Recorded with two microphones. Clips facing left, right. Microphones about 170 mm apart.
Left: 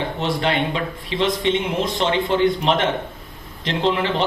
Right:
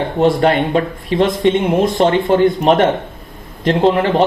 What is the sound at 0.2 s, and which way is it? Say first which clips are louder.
Speech: right 10 dB; 50° right (ahead or behind).